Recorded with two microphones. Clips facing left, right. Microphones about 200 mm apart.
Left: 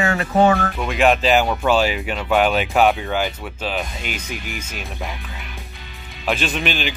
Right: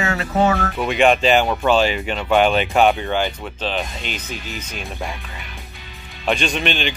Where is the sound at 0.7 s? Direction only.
Centre (ahead or behind).